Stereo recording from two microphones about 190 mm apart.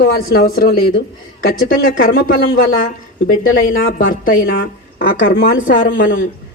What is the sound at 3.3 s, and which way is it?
A woman's voice, 50° left (ahead or behind).